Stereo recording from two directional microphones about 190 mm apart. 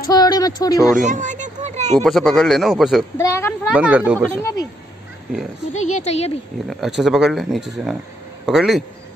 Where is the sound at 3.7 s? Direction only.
5° right (ahead or behind).